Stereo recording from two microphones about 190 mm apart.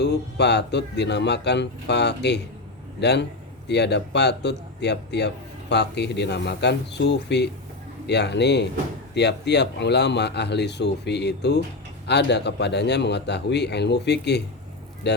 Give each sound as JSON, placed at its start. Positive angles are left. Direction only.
{"t": 0.0, "sound": "a man's voice", "side_deg": 65}